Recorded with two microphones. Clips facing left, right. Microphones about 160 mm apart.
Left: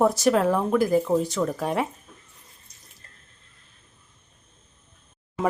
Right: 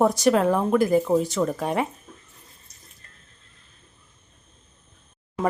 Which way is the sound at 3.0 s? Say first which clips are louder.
Even; 30° left (ahead or behind).